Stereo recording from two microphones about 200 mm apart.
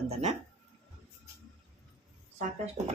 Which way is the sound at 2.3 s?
35° right (ahead or behind).